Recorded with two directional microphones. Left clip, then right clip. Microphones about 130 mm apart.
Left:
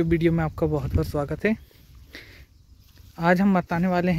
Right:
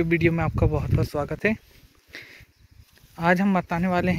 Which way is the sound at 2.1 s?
25° left (ahead or behind).